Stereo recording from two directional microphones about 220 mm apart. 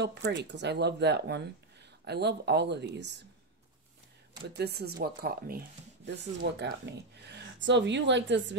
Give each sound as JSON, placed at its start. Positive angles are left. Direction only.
{"t": 0.0, "sound": "speech", "side_deg": -50}
{"t": 4.6, "sound": "speech", "side_deg": -45}